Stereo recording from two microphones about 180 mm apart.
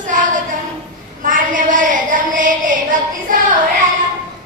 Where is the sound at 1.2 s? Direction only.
45° right (ahead or behind).